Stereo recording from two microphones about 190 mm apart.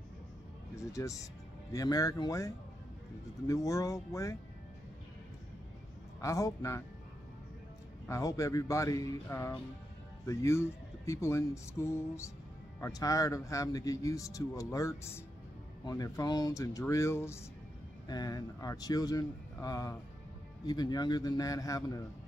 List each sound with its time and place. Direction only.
0.9 s speech: 15° left (ahead or behind)
6.2 s speech: 15° left (ahead or behind)
8.1 s speech: 15° left (ahead or behind)